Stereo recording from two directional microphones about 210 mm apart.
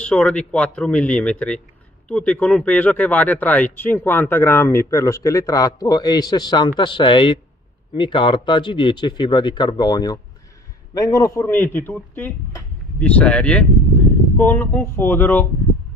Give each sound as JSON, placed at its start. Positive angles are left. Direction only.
{"t": 0.0, "sound": "speech", "side_deg": 5}